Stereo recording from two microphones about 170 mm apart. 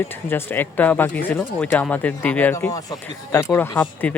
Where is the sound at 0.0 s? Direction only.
15° left (ahead or behind).